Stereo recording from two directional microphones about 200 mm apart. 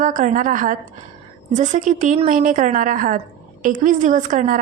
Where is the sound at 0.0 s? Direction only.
40° right (ahead or behind).